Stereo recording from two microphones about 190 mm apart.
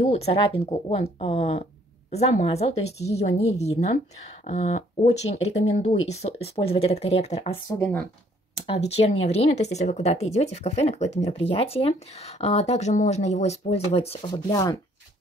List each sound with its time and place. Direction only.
0.0 s speech: 30° left (ahead or behind)
8.8 s speech: 35° left (ahead or behind)
14.3 s speech: 15° left (ahead or behind)